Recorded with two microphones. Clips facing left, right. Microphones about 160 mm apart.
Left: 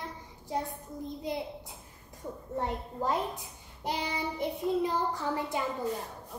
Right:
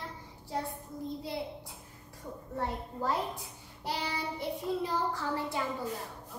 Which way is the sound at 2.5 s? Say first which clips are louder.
Left 2 dB; 20° left (ahead or behind).